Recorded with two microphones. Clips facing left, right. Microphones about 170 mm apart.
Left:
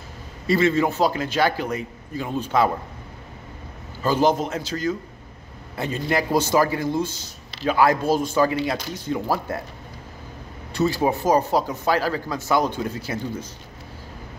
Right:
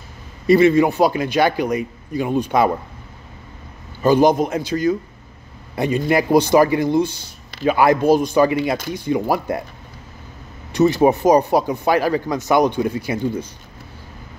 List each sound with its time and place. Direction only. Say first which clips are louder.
0.5 s speech: right 7 dB; 15° right (ahead or behind)
4.0 s speech: right 6 dB; 15° right (ahead or behind)
6.1 s speech: right 6 dB; 10° right (ahead or behind)
7.1 s a sound: even; 55° right (ahead or behind)
7.7 s speech: right 4 dB; 15° right (ahead or behind)
10.7 s speech: right 7 dB; 20° right (ahead or behind)